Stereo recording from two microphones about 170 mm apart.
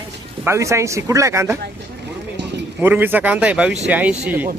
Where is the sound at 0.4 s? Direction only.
15° right (ahead or behind).